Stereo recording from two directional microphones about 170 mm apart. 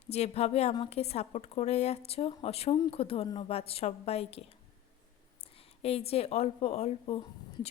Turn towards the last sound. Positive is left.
turn(degrees=35)  # may be behind; listen again after turning